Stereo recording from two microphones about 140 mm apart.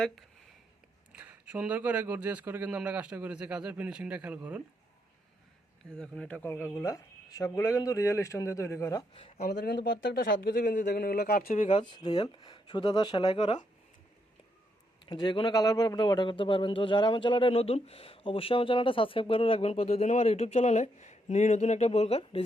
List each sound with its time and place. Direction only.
1.1 s speech: 10° right (ahead or behind)
5.8 s speech: 5° left (ahead or behind); by 9.0 s 20° left (ahead or behind)
10.2 s a man's voice: 85° left; by 11.8 s 65° left (ahead or behind)
11.8 s a man's voice: 30° left (ahead or behind)
15.0 s a man's voice: 30° left (ahead or behind)